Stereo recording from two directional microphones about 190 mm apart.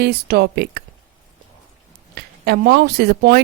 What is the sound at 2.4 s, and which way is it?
Speech, 55° right (ahead or behind).